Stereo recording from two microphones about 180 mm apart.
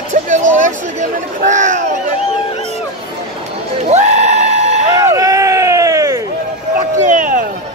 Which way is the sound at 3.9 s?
40° right (ahead or behind).